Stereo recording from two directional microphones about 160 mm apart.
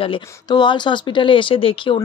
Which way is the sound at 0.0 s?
30° left (ahead or behind).